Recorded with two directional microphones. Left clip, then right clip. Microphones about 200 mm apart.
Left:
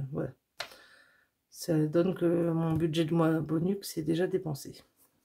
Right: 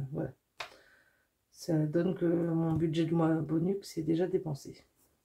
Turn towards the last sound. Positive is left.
turn(degrees=35)  # may be behind; listen again after turning